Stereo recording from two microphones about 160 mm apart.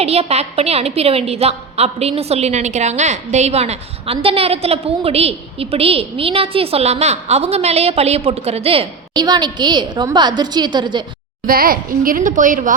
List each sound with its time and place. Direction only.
0.0 s a woman's voice: 40° right (ahead or behind)
11.4 s speech: 65° right (ahead or behind)